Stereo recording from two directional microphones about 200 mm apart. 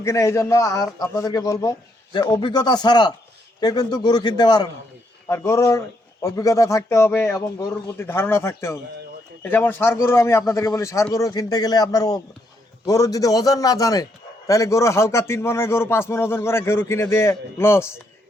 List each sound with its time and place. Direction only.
0.0 s a man's voice: 15° left (ahead or behind)